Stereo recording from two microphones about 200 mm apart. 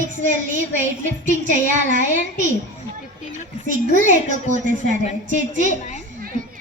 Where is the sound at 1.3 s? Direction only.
40° right (ahead or behind).